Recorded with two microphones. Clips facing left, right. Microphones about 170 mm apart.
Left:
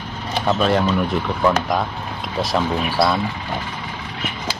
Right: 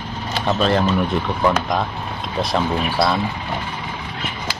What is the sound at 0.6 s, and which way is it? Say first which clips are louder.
Speech: right 1 dB; 5° left (ahead or behind).